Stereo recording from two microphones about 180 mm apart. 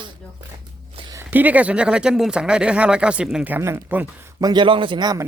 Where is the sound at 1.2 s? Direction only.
10° right (ahead or behind).